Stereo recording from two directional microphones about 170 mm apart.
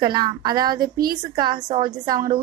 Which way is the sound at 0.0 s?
25° right (ahead or behind).